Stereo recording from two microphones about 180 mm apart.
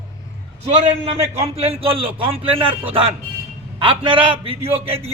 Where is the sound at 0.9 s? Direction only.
35° right (ahead or behind).